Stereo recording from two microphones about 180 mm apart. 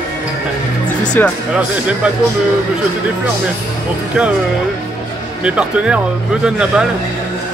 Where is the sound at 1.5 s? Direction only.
5° right (ahead or behind).